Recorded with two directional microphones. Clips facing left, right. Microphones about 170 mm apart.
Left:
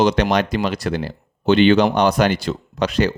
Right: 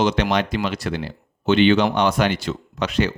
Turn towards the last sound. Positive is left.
turn(degrees=35)  # may be behind; listen again after turning